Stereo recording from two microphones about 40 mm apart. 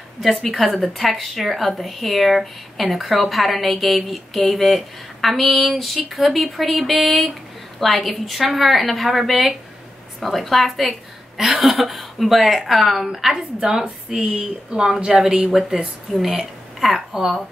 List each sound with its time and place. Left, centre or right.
0.2 s a woman's voice: centre